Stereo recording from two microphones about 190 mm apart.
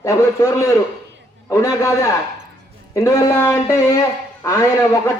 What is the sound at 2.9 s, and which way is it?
A man's voice, 15° left (ahead or behind).